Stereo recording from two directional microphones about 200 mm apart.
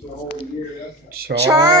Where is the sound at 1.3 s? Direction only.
50° right (ahead or behind).